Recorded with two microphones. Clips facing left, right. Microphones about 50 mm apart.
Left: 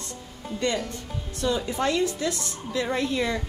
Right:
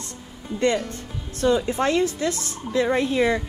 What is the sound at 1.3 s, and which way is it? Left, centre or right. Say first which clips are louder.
A woman's voice: right 5 dB; right.